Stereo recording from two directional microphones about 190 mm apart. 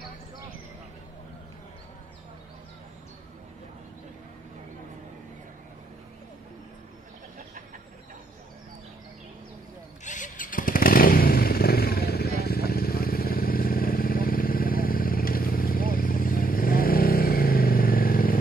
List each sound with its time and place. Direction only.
10.0 s motorcycle: 40° left (ahead or behind)